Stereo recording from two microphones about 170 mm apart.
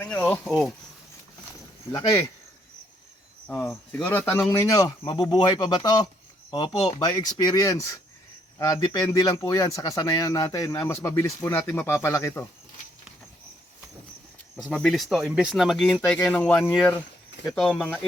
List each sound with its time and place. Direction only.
0.0 s speech: 5° left (ahead or behind)
1.9 s speech: 20° left (ahead or behind)
3.5 s speech: 15° left (ahead or behind)
14.5 s speech: 5° left (ahead or behind)